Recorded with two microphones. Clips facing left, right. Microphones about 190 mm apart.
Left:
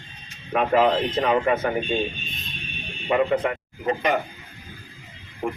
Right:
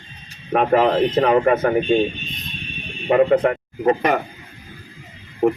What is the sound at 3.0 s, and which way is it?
A man's voice, 45° right (ahead or behind).